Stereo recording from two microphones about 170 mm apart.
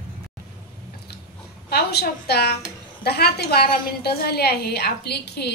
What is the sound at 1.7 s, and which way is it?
A woman's voice, 70° left (ahead or behind).